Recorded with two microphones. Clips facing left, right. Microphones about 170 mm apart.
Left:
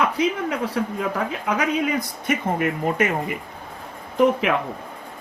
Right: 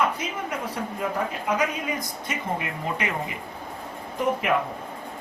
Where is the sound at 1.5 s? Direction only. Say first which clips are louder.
Left 5 dB; 70° left (ahead or behind); by 3.1 s 50° left (ahead or behind).